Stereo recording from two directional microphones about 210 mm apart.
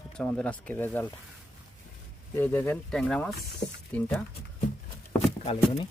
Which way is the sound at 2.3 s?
10° left (ahead or behind).